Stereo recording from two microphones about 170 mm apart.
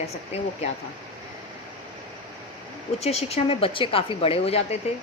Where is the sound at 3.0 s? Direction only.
40° left (ahead or behind).